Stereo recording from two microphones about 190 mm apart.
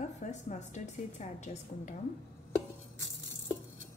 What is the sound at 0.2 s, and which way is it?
A woman's voice, 40° left (ahead or behind).